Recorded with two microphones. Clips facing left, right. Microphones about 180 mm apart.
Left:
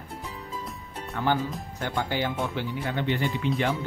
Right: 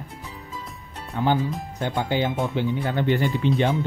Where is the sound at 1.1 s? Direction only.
15° right (ahead or behind).